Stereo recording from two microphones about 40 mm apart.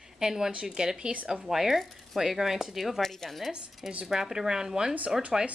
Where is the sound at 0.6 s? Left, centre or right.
Centre.